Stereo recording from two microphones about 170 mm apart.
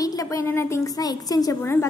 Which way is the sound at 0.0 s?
20° left (ahead or behind).